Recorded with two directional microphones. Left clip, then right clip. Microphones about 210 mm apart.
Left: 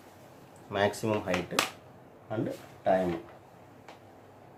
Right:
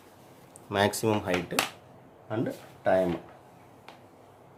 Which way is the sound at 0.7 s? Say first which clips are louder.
Right 3 dB; 55° right (ahead or behind).